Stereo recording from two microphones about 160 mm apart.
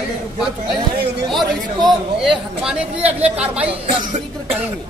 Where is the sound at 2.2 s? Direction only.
5° right (ahead or behind).